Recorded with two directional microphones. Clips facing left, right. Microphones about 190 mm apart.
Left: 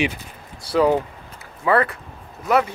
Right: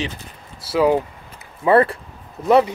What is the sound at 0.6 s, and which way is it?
Speech, 5° right (ahead or behind).